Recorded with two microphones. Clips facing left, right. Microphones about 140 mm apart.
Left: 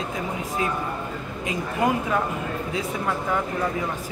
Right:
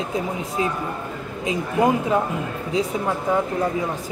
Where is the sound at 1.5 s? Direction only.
25° right (ahead or behind).